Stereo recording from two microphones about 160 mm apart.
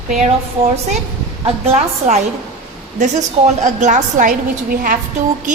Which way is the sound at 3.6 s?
50° right (ahead or behind).